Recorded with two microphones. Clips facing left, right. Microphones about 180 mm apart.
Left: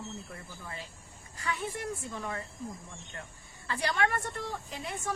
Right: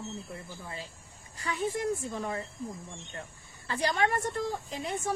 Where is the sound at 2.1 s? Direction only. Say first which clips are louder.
Right 3 dB; 30° right (ahead or behind).